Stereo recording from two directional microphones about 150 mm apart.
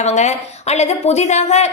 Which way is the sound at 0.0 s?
50° left (ahead or behind).